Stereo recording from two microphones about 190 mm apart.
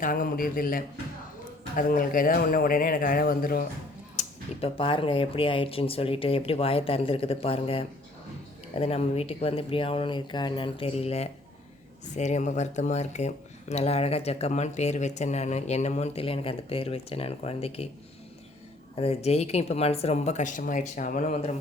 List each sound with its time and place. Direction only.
0.0 s speech: 45° left (ahead or behind)
4.2 s speech: 30° left (ahead or behind)
18.9 s speech: 30° left (ahead or behind)